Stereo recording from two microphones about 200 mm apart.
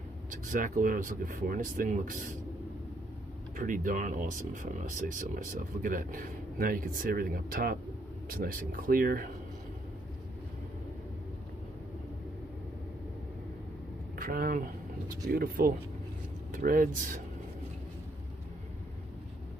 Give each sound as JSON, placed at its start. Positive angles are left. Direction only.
{"t": 0.3, "sound": "speech", "side_deg": -40}
{"t": 3.5, "sound": "speech", "side_deg": -40}
{"t": 14.1, "sound": "speech", "side_deg": -45}